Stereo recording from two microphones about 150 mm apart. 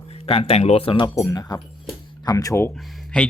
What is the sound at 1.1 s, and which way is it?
Speech, 25° left (ahead or behind).